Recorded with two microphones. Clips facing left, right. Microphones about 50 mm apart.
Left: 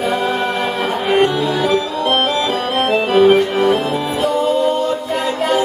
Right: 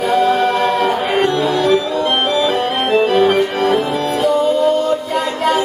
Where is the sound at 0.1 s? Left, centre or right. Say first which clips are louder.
Right 4 dB; centre.